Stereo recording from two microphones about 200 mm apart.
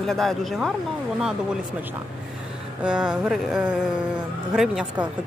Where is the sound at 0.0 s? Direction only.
Centre (ahead or behind).